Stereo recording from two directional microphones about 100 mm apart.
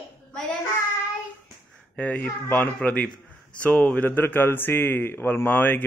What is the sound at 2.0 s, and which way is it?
A man's voice, 15° left (ahead or behind).